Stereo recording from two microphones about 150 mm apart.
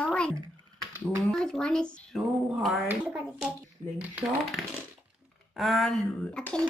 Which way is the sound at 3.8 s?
35° right (ahead or behind).